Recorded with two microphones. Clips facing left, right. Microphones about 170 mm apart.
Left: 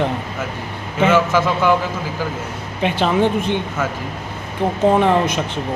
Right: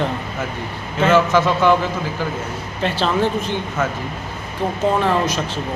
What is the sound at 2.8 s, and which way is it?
Speech, 15° left (ahead or behind).